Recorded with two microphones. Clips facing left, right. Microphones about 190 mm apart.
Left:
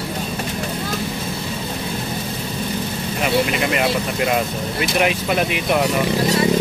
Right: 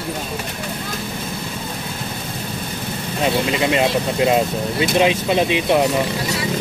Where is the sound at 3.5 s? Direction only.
25° right (ahead or behind).